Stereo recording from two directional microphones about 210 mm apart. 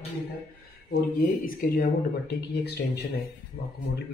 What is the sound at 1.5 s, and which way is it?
Speech, 40° left (ahead or behind).